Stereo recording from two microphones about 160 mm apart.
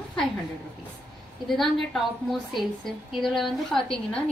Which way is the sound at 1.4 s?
Centre (ahead or behind).